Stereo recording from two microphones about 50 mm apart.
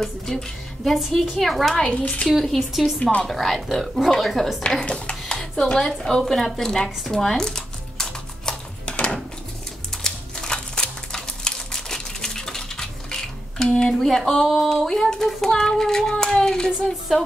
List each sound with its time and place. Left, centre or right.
0.0 s speech: centre
1.9 s speech: left
2.2 s speech: centre
4.6 s speech: left
5.4 s a sound: centre
10.0 s crumpling: centre
13.9 s speech: centre
14.9 s child singing: centre